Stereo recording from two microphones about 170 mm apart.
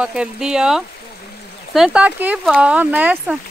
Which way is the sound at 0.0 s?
5° right (ahead or behind).